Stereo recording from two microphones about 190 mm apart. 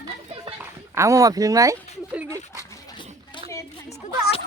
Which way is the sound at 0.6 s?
15° right (ahead or behind).